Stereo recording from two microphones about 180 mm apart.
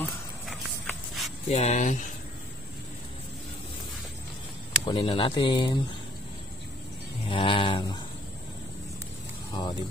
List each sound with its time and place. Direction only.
0.5 s a sound: centre (ahead or behind)
1.5 s speech: 35° left (ahead or behind)
4.8 s speech: 30° left (ahead or behind)
7.2 s speech: 30° left (ahead or behind)
9.5 s speech: 25° left (ahead or behind)